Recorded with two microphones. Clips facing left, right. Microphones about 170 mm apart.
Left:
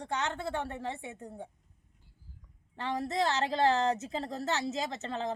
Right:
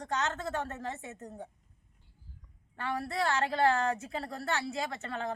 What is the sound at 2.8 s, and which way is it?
A woman's voice, 20° left (ahead or behind).